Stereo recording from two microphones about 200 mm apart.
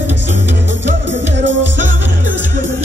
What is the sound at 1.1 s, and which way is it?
Music, 65° right (ahead or behind).